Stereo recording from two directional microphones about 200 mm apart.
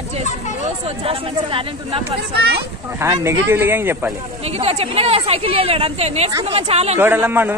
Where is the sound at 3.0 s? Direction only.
15° right (ahead or behind).